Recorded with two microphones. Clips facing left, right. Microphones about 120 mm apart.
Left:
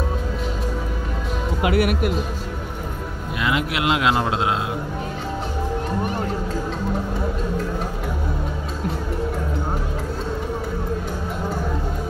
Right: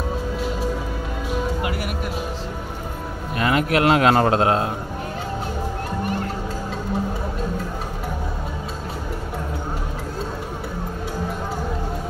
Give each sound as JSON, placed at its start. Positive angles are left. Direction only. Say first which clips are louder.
{"t": 1.6, "sound": "music", "louder": "left 7 dB", "side_deg": 70}
{"t": 3.3, "sound": "speech", "louder": "right 4 dB", "side_deg": -45}